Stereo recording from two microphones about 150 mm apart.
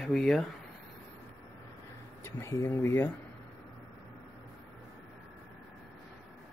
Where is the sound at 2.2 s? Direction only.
15° left (ahead or behind).